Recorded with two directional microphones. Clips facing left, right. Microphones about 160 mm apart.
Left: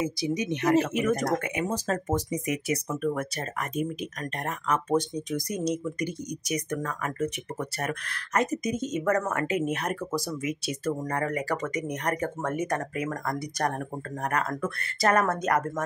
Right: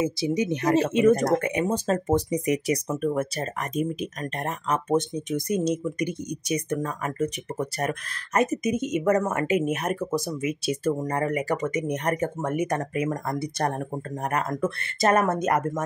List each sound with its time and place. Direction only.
0.0 s speech: 30° right (ahead or behind)
4.6 s speech: 25° right (ahead or behind)
12.4 s speech: 15° right (ahead or behind)